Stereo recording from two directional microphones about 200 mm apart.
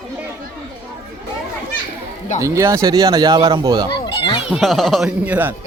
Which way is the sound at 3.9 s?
25° left (ahead or behind).